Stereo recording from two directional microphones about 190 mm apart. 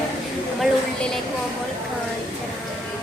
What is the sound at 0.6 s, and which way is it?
Speech, centre (ahead or behind).